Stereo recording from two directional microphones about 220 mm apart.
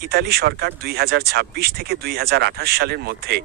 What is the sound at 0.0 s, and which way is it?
Speech, 45° right (ahead or behind).